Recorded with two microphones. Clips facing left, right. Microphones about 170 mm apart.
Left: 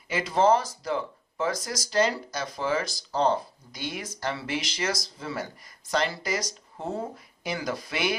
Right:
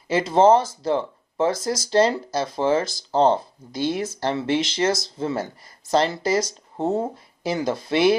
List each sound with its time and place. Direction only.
0.1 s speech: 25° right (ahead or behind)